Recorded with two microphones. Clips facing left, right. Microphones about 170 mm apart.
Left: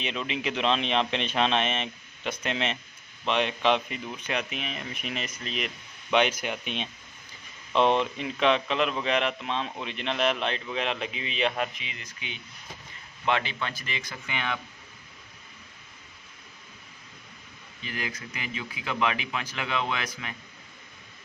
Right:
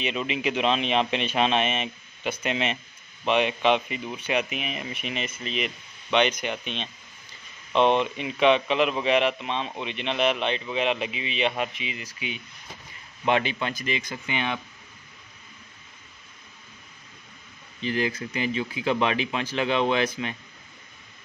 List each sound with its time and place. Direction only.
0.0 s a man's voice: 5° right (ahead or behind); by 14.6 s 20° right (ahead or behind)
17.8 s speech: 30° right (ahead or behind)